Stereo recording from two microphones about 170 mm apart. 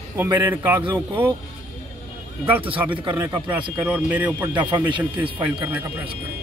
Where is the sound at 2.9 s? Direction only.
30° right (ahead or behind).